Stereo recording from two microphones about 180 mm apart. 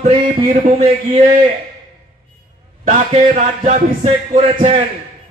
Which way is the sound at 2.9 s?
40° right (ahead or behind).